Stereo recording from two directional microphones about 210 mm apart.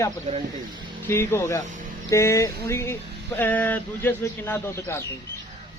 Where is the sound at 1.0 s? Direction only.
10° left (ahead or behind).